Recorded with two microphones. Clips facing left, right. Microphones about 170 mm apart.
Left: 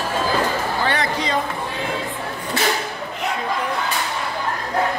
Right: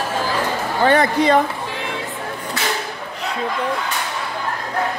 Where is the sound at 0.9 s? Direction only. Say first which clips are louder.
Right 7 dB; 55° right (ahead or behind).